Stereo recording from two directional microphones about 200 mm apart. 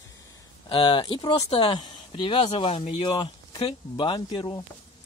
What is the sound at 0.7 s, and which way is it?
Speech, 20° left (ahead or behind).